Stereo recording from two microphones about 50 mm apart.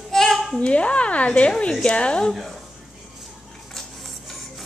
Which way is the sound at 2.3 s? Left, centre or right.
Centre.